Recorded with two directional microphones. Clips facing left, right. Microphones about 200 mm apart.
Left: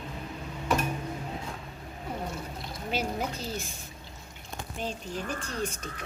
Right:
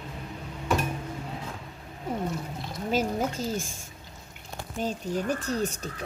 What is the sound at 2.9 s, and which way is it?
Speech, 45° right (ahead or behind).